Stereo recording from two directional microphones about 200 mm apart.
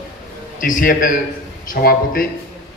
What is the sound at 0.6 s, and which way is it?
A man's voice, 45° left (ahead or behind).